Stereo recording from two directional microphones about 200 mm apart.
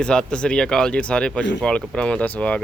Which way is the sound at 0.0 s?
5° left (ahead or behind).